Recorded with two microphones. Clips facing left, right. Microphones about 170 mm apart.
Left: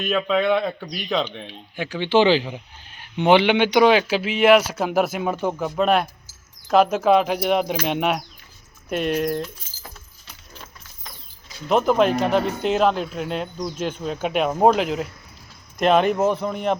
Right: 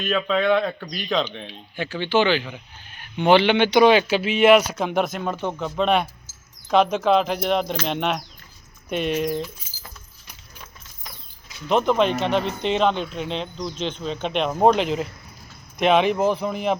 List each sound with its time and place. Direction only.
0.0 s speech: 5° left (ahead or behind)
2.0 s speech: 30° left (ahead or behind)
3.2 s speech: 20° left (ahead or behind); by 9.5 s centre (ahead or behind)
11.7 s speech: 5° left (ahead or behind)